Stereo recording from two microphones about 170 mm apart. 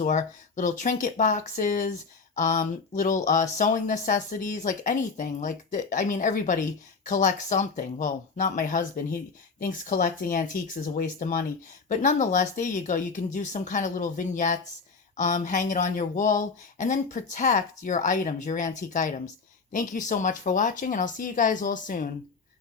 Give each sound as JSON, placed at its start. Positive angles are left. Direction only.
{"t": 0.0, "sound": "speech", "side_deg": 45}